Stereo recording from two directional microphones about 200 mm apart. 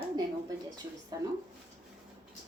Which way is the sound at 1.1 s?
20° right (ahead or behind).